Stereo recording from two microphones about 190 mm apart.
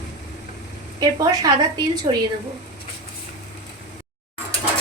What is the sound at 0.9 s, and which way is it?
Speech, 20° right (ahead or behind).